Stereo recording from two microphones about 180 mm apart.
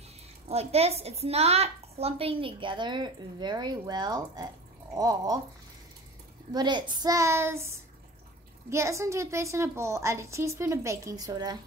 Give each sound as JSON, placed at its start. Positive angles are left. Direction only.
{"t": 0.5, "sound": "a woman's voice", "side_deg": -35}
{"t": 6.5, "sound": "a woman's voice", "side_deg": -25}